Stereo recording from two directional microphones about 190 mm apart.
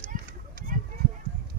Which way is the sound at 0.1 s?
45° right (ahead or behind).